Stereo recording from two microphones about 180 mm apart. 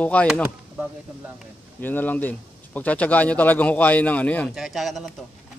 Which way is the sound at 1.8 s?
10° left (ahead or behind).